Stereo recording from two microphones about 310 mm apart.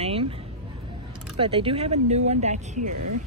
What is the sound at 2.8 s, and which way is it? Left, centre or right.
Speech, right.